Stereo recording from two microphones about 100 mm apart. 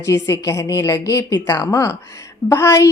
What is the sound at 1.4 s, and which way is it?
A woman's voice, 20° left (ahead or behind).